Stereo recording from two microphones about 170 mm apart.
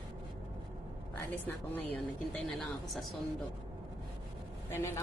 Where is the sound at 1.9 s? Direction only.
5° left (ahead or behind).